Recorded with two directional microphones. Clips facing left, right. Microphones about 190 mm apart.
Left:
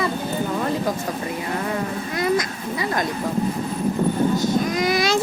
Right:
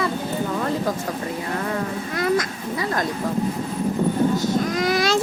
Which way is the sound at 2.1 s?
15° left (ahead or behind).